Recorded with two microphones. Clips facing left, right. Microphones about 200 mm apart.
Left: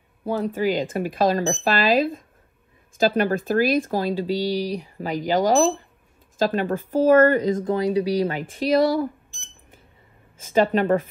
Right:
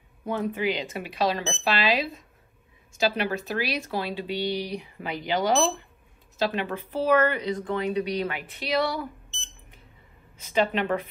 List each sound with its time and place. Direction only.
0.2 s speech: 35° left (ahead or behind)
10.3 s speech: 45° left (ahead or behind)